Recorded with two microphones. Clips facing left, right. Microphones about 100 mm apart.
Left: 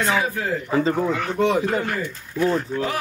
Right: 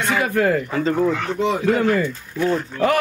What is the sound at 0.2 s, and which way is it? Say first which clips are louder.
Speech: right 6 dB; 65° right (ahead or behind).